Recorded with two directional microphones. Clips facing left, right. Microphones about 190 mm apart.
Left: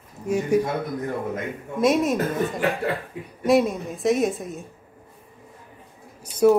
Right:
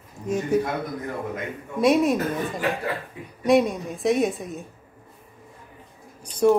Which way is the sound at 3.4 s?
Centre (ahead or behind).